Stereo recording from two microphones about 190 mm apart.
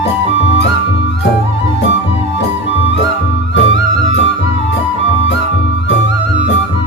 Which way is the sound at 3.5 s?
75° left (ahead or behind).